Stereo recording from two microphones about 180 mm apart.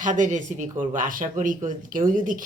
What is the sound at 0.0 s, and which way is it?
Speech, 45° right (ahead or behind).